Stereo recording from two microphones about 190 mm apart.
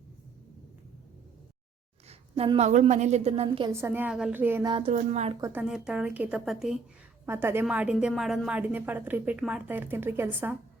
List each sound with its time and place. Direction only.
2.0 s a woman's voice: 30° right (ahead or behind)
3.7 s a woman's voice: 15° right (ahead or behind)
4.6 s speech: 25° right (ahead or behind)
4.9 s a woman's voice: 40° right (ahead or behind)
5.4 s a woman's voice: 10° right (ahead or behind)
7.3 s a woman's voice: 10° right (ahead or behind)